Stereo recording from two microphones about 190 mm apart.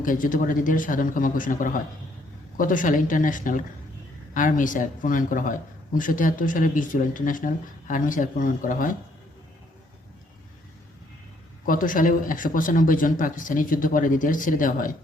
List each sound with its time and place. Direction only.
0.0 s speech: 45° left (ahead or behind)
11.6 s speech: 45° left (ahead or behind)